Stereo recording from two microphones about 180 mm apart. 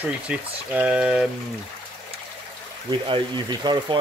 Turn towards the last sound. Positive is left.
turn(degrees=-25)  # may be behind; listen again after turning